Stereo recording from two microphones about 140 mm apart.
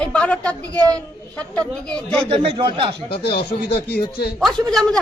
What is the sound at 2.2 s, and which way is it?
Speech, 40° right (ahead or behind).